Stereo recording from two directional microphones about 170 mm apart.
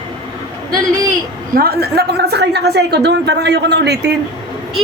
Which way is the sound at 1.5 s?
65° right (ahead or behind).